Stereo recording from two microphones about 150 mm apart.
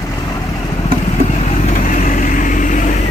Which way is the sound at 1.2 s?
50° left (ahead or behind).